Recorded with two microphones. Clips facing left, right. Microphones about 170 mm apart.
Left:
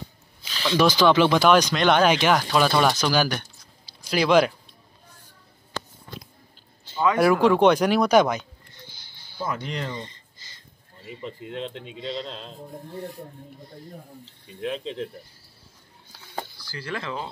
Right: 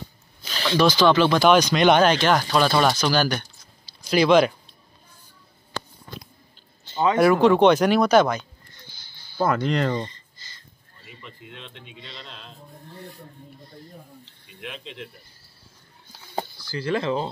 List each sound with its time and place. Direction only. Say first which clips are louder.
0.4 s a sound: right 5 dB; 45° right (ahead or behind)
0.7 s speech: right 1 dB; 10° left (ahead or behind)
2.0 s speech: even; 10° left (ahead or behind)
3.8 s a sound: right 4 dB; 5° left (ahead or behind)
6.9 s a sound: right 2 dB; 10° left (ahead or behind)
9.4 s speech: right 8 dB; 65° right (ahead or behind)
11.2 s speech: left 11 dB; 35° left (ahead or behind)
14.6 s speech: left 8 dB; 35° left (ahead or behind)
16.3 s speech: right 5 dB; 25° right (ahead or behind)